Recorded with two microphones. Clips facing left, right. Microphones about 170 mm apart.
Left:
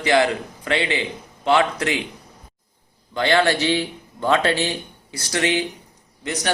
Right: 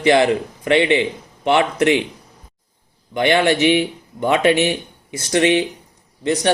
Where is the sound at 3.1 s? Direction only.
20° right (ahead or behind).